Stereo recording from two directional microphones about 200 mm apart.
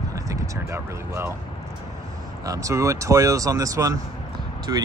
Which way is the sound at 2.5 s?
15° right (ahead or behind).